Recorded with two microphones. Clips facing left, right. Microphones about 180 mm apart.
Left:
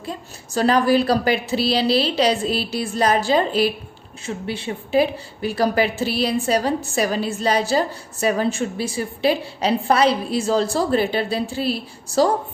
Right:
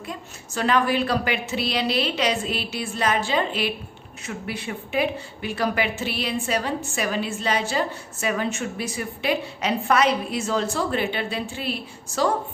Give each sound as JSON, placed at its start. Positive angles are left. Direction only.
{"t": 0.0, "sound": "a woman's voice", "side_deg": 35}